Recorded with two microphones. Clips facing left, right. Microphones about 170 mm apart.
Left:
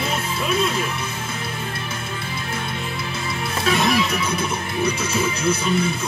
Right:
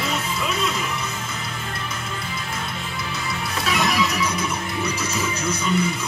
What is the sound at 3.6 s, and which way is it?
Music, 30° left (ahead or behind).